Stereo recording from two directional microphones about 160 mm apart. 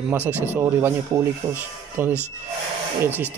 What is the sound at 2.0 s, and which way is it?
Speech, 15° right (ahead or behind).